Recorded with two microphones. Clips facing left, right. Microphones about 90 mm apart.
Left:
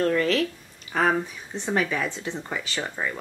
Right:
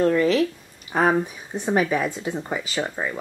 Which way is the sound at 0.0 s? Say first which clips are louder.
Right 4 dB; 10° right (ahead or behind).